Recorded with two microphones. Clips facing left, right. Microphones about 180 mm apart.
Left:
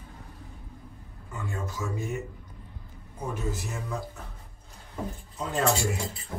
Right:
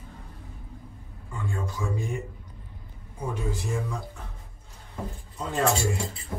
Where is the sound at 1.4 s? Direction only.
5° left (ahead or behind).